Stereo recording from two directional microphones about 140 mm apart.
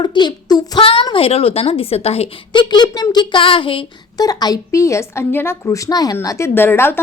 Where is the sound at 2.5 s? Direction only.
35° left (ahead or behind).